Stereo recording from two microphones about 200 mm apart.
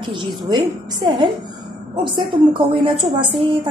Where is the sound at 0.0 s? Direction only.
25° right (ahead or behind).